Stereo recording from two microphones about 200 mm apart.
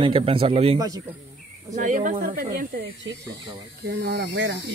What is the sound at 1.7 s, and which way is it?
Speech, 40° right (ahead or behind).